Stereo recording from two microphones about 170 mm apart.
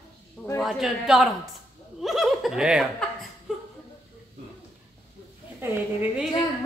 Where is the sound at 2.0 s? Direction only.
Centre (ahead or behind).